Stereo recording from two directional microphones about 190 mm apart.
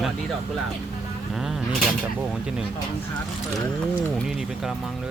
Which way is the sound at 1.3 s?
Centre (ahead or behind).